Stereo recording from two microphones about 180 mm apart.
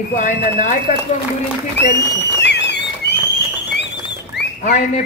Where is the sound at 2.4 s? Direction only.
70° left (ahead or behind).